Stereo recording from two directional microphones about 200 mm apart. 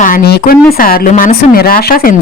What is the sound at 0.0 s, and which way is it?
Speech, 45° left (ahead or behind).